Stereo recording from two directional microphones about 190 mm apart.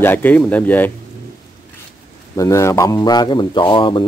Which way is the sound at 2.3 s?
15° left (ahead or behind).